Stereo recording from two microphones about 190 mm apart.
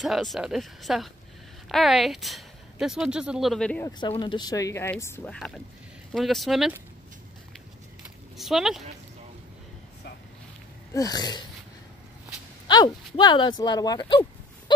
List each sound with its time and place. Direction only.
0.0 s speech: centre (ahead or behind)
4.1 s speech: 25° left (ahead or behind); by 6.8 s centre (ahead or behind)
8.4 s speech: centre (ahead or behind)
10.9 s speech: 20° left (ahead or behind)
12.6 s speech: 25° left (ahead or behind)